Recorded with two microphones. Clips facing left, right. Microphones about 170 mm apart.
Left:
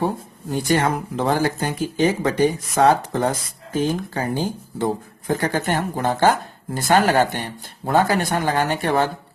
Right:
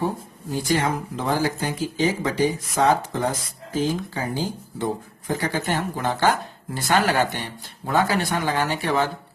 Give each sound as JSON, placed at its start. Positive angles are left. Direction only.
{"t": 0.7, "sound": "speech", "side_deg": 55}